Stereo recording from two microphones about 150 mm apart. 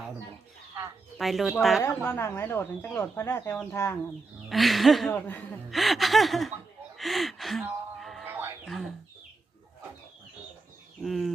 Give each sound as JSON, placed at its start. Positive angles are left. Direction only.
{"t": 1.2, "sound": "speech", "side_deg": 0}
{"t": 2.0, "sound": "speech", "side_deg": 15}
{"t": 4.4, "sound": "speech", "side_deg": 0}
{"t": 5.1, "sound": "speech", "side_deg": 10}
{"t": 5.7, "sound": "speech", "side_deg": 0}
{"t": 6.9, "sound": "gasp", "side_deg": 0}
{"t": 7.9, "sound": "music", "side_deg": 0}
{"t": 8.2, "sound": "a sound", "side_deg": -15}
{"t": 8.6, "sound": "speech", "side_deg": 0}
{"t": 11.0, "sound": "speech", "side_deg": 0}